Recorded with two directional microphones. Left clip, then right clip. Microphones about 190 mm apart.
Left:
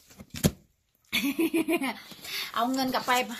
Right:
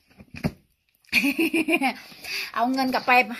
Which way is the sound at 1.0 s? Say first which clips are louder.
Right 6 dB; 40° right (ahead or behind).